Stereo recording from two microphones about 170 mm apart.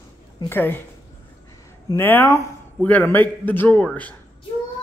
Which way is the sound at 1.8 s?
15° left (ahead or behind).